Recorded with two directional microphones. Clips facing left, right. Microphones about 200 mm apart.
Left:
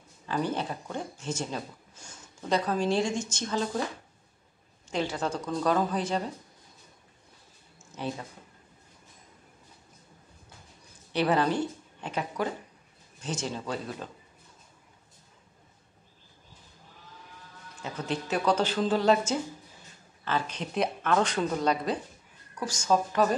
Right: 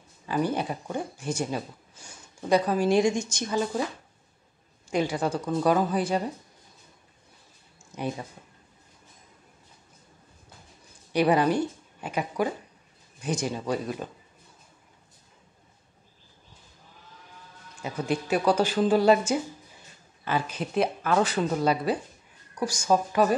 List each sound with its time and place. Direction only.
0.3 s speech: 10° right (ahead or behind)
4.9 s speech: 10° right (ahead or behind)
7.9 s speech: 15° right (ahead or behind)
11.1 s speech: 15° right (ahead or behind)
17.7 s speech: 10° right (ahead or behind)